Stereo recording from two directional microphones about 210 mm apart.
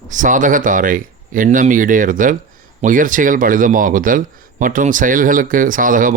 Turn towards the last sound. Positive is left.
turn(degrees=-40)  # may be behind; listen again after turning